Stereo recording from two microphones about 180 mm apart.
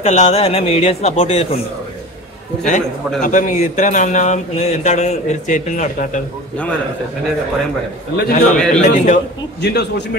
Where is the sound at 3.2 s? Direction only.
45° left (ahead or behind).